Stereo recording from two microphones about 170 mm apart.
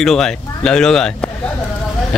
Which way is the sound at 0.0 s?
5° left (ahead or behind).